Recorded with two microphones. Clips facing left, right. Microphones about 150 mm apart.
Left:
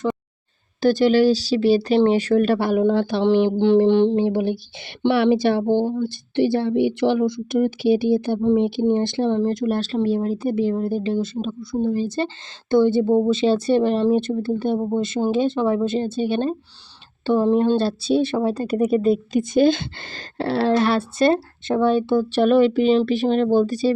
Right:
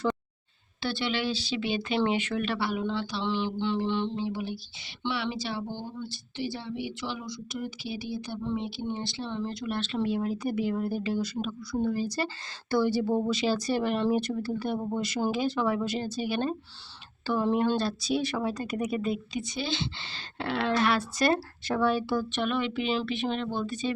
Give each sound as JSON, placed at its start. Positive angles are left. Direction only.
{"t": 0.8, "sound": "a woman's voice", "side_deg": 45}
{"t": 19.4, "sound": "a woman's voice", "side_deg": 50}
{"t": 22.4, "sound": "a woman's voice", "side_deg": 40}